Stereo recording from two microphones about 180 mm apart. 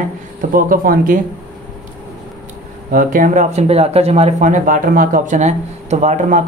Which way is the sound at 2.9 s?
50° right (ahead or behind).